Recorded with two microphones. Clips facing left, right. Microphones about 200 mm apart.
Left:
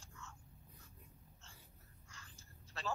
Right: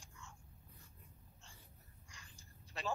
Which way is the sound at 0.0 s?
15° right (ahead or behind).